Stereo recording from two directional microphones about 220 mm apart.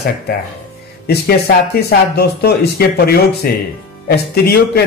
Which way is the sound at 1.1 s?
45° left (ahead or behind).